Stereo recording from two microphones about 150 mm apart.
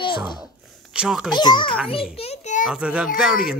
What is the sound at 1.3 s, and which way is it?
Speech, 30° left (ahead or behind).